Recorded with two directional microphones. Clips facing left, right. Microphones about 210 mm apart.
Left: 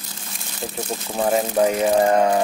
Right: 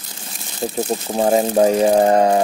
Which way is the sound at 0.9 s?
30° right (ahead or behind).